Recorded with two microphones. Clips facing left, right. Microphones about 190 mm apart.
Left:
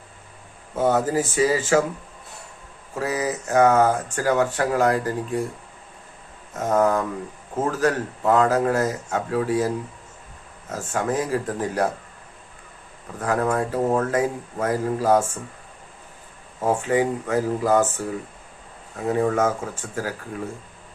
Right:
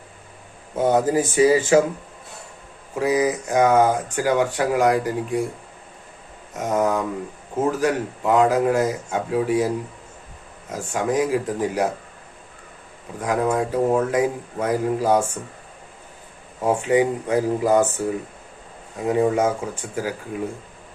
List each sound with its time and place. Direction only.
0.8 s speech: 15° right (ahead or behind)
2.9 s speech: 15° right (ahead or behind)
6.5 s speech: 10° right (ahead or behind)
13.1 s speech: 15° right (ahead or behind)
16.6 s speech: 15° right (ahead or behind)